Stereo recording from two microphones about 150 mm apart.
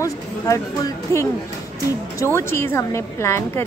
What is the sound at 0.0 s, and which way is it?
A woman's voice, 20° left (ahead or behind).